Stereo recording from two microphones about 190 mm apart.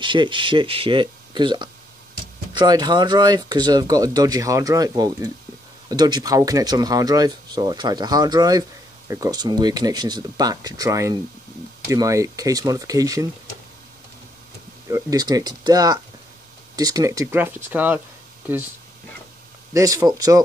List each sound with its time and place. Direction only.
0.0 s speech: 25° right (ahead or behind)
14.9 s speech: 15° right (ahead or behind)
19.7 s speech: 20° right (ahead or behind)